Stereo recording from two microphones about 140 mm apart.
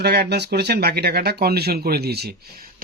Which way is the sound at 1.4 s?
90° right.